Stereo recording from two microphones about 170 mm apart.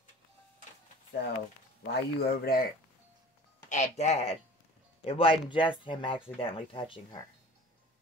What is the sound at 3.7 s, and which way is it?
Speech, 45° left (ahead or behind).